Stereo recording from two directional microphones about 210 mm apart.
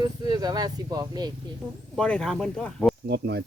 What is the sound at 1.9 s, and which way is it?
Speech, 5° left (ahead or behind).